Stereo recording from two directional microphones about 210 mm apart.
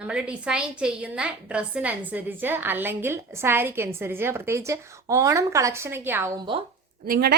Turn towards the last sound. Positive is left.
turn(degrees=-45)  # may be behind; listen again after turning